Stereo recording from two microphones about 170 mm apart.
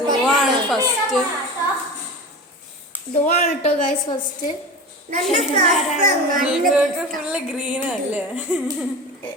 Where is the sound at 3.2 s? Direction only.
45° left (ahead or behind).